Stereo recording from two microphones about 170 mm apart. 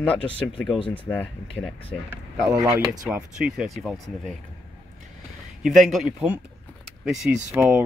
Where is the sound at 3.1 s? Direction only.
5° right (ahead or behind).